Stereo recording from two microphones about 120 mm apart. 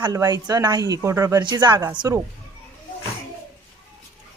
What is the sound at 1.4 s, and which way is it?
Speech, 40° right (ahead or behind).